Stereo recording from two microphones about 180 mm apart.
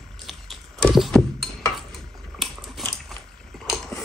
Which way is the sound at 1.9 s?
Centre (ahead or behind).